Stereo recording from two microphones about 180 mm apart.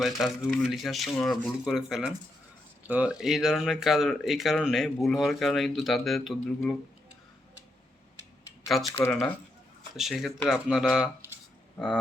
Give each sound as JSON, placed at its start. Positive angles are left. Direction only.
{"t": 0.0, "sound": "speech", "side_deg": 0}
{"t": 8.7, "sound": "speech", "side_deg": 0}